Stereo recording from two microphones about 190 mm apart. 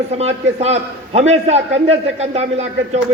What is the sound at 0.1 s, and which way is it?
A man's voice, 35° right (ahead or behind).